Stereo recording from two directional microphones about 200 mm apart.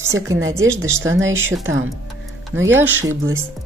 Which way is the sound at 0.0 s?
15° right (ahead or behind).